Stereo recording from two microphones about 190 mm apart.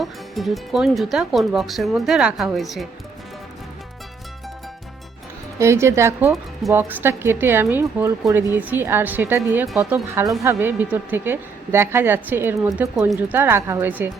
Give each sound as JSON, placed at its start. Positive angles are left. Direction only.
{"t": 0.0, "sound": "speech", "side_deg": 0}
{"t": 5.5, "sound": "speech", "side_deg": -15}